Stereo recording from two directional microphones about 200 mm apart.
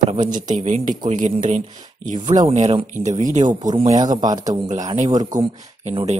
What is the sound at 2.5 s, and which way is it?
Speech, 35° right (ahead or behind).